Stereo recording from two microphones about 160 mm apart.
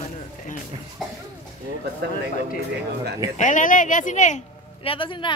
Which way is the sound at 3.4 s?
50° left (ahead or behind).